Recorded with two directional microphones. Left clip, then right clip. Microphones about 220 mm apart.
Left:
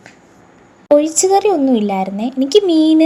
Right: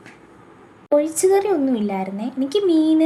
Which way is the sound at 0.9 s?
20° left (ahead or behind).